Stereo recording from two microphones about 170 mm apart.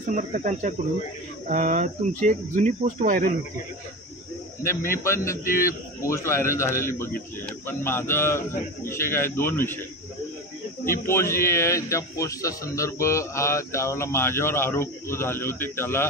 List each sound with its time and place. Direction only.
0.1 s speech: 50° right (ahead or behind)
5.0 s a man's voice: 15° left (ahead or behind)
5.4 s a man's voice: 55° left (ahead or behind)
5.7 s a man's voice: 15° left (ahead or behind)
10.9 s a man's voice: 15° left (ahead or behind)